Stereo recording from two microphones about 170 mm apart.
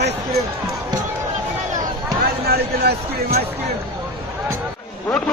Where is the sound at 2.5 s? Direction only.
70° right (ahead or behind).